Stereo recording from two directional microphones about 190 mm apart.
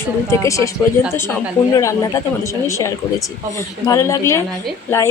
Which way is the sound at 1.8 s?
15° left (ahead or behind).